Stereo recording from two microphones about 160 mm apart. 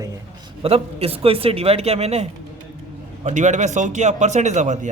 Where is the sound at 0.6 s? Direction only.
40° right (ahead or behind).